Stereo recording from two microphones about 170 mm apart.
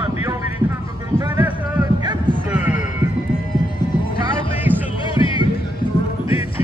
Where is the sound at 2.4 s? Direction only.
10° right (ahead or behind).